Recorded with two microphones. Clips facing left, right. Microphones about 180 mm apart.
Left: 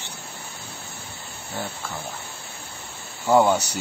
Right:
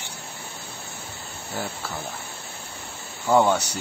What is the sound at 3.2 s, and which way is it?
Speech, 10° left (ahead or behind).